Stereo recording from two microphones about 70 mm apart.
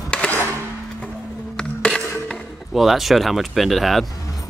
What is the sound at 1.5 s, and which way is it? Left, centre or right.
Music, centre.